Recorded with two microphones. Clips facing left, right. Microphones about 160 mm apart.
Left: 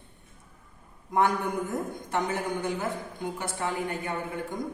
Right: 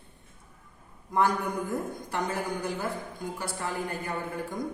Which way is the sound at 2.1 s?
20° left (ahead or behind).